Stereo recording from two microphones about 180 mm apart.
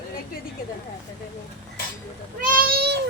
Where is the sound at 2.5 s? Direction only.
55° right (ahead or behind).